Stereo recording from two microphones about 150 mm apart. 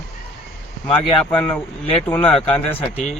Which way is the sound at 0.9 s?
35° left (ahead or behind).